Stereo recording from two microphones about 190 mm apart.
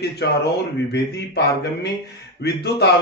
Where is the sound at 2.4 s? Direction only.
60° left (ahead or behind).